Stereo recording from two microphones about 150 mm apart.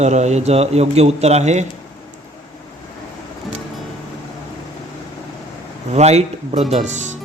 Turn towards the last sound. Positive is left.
turn(degrees=-50)  # may be behind; listen again after turning